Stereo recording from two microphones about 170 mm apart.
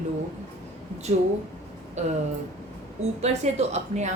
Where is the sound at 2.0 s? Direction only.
40° right (ahead or behind).